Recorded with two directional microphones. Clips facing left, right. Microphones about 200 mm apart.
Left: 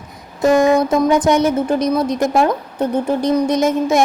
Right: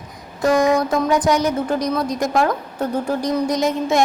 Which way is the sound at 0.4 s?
25° left (ahead or behind).